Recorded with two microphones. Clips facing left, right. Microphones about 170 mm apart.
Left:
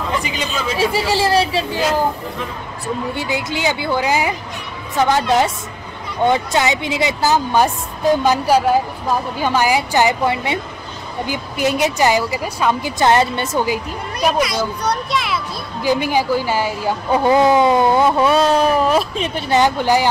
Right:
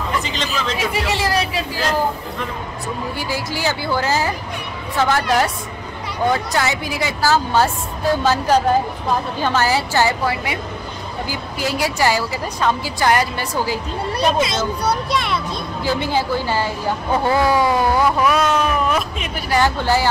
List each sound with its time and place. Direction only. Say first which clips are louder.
0.2 s speech: left 1 dB; 10° left (ahead or behind)
0.7 s a woman's voice: left 7 dB; 30° left (ahead or behind)
3.2 s a woman's voice: left 2 dB; 20° left (ahead or behind)
6.2 s a woman's voice: left 3 dB; 20° left (ahead or behind)
13.0 s a woman's voice: left 3 dB; 25° left (ahead or behind)
14.4 s a child's voice: left 1 dB; 25° right (ahead or behind)
14.8 s a child's voice: even; 5° right (ahead or behind)
15.8 s a woman's voice: left 4 dB; 15° left (ahead or behind)